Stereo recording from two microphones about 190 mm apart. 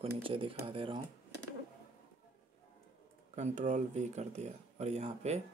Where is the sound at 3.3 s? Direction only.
40° right (ahead or behind).